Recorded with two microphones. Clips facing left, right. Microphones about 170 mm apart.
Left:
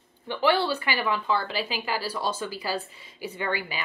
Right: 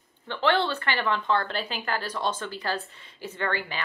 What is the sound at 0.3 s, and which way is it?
A woman's voice, 10° left (ahead or behind).